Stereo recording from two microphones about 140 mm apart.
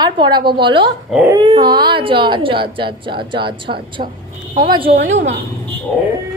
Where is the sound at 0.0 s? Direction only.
35° right (ahead or behind).